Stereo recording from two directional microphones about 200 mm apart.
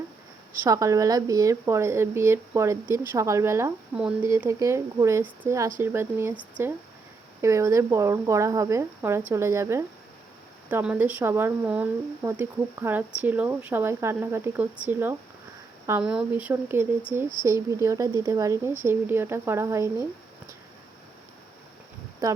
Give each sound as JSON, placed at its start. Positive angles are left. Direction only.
{"t": 0.7, "sound": "speech", "side_deg": -15}